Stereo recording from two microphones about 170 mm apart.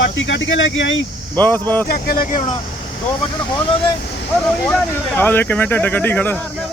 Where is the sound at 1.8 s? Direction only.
60° left (ahead or behind).